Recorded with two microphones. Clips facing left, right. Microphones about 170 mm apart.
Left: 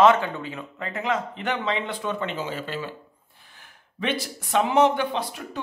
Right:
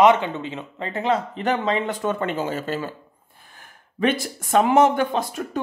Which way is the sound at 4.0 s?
45° right (ahead or behind).